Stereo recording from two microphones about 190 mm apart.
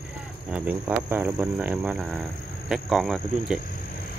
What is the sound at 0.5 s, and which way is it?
Speech, 10° right (ahead or behind).